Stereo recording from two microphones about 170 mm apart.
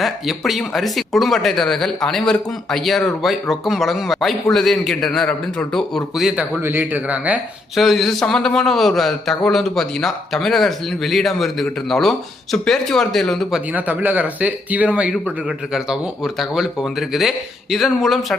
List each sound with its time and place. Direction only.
0.0 s a man's voice: centre (ahead or behind)
13.7 s a man's voice: 10° right (ahead or behind)